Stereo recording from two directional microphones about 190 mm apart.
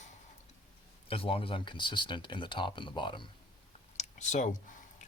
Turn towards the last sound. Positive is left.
turn(degrees=40)  # may be behind; listen again after turning